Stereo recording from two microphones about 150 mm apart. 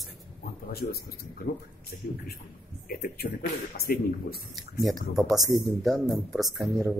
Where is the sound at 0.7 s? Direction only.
90° left.